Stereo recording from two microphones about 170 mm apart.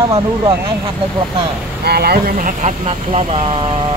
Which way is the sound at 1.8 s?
70° right (ahead or behind).